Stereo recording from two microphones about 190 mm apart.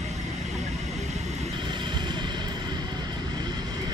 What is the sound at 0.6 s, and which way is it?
Vehicle, 35° right (ahead or behind).